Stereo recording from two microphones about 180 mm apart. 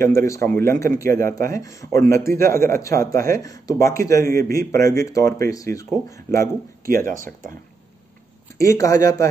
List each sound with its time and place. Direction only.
0.0 s speech: 15° left (ahead or behind)
8.5 s speech: 15° left (ahead or behind)